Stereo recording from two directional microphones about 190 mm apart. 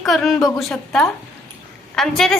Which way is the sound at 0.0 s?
Centre (ahead or behind).